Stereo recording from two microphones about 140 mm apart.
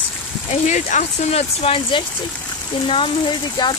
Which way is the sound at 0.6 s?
65° left (ahead or behind).